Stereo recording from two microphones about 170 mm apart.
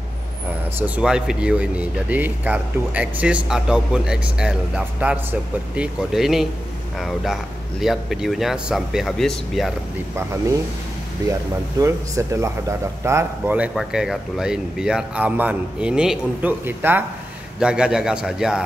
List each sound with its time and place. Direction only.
0.7 s speech: 10° right (ahead or behind)
11.8 s speech: 15° right (ahead or behind)
13.7 s speech: centre (ahead or behind)